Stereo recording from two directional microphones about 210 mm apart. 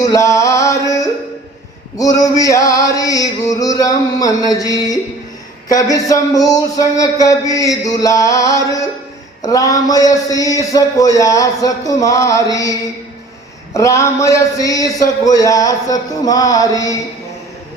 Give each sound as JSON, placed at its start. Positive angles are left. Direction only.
{"t": 0.0, "sound": "music", "side_deg": 15}
{"t": 2.0, "sound": "a man's voice", "side_deg": 15}
{"t": 13.7, "sound": "a man's voice", "side_deg": 15}